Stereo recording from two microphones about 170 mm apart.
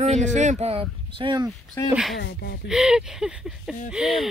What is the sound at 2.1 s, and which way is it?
Speech, 90° left.